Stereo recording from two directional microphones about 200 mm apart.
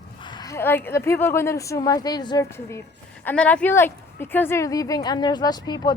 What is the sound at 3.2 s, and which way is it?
Speech, 10° left (ahead or behind).